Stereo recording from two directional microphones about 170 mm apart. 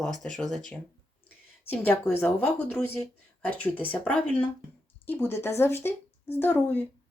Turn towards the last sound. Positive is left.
turn(degrees=10)  # may be behind; listen again after turning